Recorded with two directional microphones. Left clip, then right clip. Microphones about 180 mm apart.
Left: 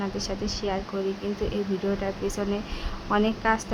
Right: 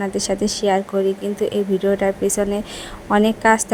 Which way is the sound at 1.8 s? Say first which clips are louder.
Right 10 dB; 30° right (ahead or behind).